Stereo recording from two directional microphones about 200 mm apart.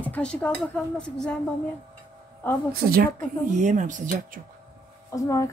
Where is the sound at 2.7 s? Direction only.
45° right (ahead or behind).